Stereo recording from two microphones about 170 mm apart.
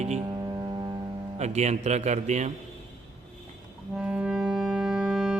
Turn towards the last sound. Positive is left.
turn(degrees=-5)  # may be behind; listen again after turning